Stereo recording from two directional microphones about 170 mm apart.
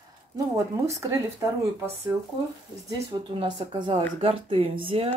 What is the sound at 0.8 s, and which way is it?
Speech, 15° right (ahead or behind).